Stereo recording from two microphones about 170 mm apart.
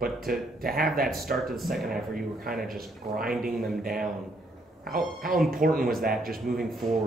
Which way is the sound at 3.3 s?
Centre (ahead or behind).